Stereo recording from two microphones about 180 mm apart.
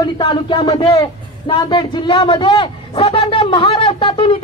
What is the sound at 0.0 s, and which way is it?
A man's voice, 25° left (ahead or behind).